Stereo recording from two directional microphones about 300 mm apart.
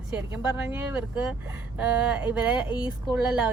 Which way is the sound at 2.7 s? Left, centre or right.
Centre.